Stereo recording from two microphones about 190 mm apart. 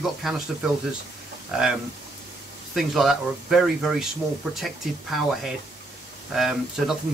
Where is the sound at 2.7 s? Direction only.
Centre (ahead or behind).